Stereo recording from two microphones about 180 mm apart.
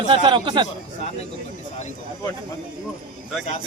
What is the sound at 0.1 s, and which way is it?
Speech, 25° right (ahead or behind).